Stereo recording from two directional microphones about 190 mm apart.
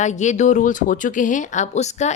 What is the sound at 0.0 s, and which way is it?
Speech, 40° left (ahead or behind).